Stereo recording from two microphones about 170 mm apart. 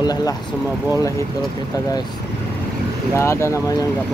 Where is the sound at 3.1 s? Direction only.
15° left (ahead or behind).